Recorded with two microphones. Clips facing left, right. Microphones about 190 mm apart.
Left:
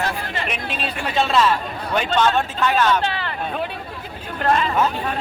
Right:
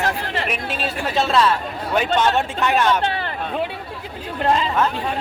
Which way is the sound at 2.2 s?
15° right (ahead or behind).